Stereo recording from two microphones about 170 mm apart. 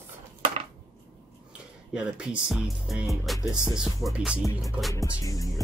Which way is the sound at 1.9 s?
5° right (ahead or behind).